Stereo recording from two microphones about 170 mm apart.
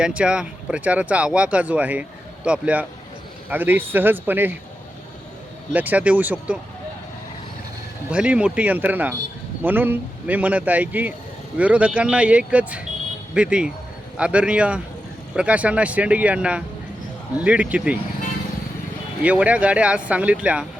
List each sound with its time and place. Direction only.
0.0 s speech: 5° right (ahead or behind)
5.7 s speech: 10° right (ahead or behind)
8.1 s speech: 5° right (ahead or behind)
19.2 s speech: 10° right (ahead or behind)